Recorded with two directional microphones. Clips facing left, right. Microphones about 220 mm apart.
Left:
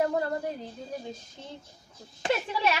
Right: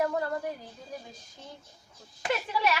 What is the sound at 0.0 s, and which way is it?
Speech, 25° left (ahead or behind).